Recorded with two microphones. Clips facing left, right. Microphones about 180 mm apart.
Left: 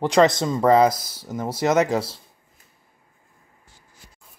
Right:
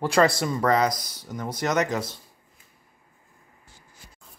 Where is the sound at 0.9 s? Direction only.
5° left (ahead or behind).